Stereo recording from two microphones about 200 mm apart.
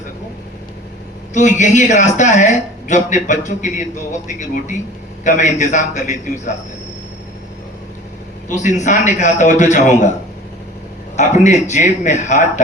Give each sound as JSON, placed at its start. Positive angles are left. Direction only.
{"t": 1.3, "sound": "speech", "side_deg": 35}
{"t": 8.4, "sound": "speech", "side_deg": 35}
{"t": 11.2, "sound": "speech", "side_deg": 35}